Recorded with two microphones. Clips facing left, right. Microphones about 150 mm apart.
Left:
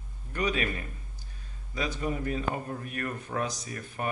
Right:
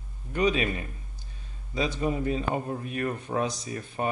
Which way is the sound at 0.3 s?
20° right (ahead or behind).